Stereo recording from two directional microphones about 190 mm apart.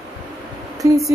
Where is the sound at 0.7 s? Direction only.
15° right (ahead or behind).